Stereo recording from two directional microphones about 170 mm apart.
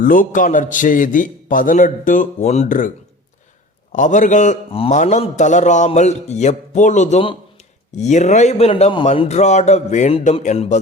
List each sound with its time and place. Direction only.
0.0 s a man's voice: 50° left (ahead or behind)
3.9 s a man's voice: 50° left (ahead or behind)
4.7 s a man's voice: 35° left (ahead or behind)